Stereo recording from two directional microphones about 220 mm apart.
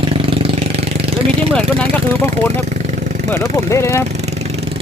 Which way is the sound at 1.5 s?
5° left (ahead or behind).